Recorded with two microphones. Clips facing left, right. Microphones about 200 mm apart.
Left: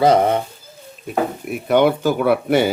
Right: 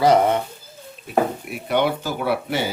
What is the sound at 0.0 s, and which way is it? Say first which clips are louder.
Speech: left 2 dB; 25° left (ahead or behind).